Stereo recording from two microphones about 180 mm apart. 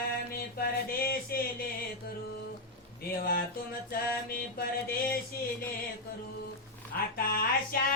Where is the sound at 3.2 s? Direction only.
55° left (ahead or behind).